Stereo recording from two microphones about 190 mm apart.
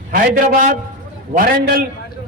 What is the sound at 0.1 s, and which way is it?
A man's voice, 45° right (ahead or behind).